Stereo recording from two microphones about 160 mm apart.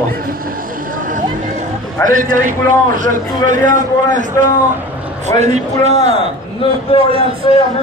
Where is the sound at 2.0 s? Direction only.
55° right (ahead or behind).